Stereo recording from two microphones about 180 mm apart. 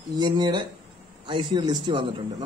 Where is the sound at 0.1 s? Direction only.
20° right (ahead or behind).